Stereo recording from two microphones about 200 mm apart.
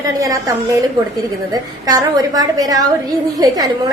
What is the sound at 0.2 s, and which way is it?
Speech, 15° right (ahead or behind).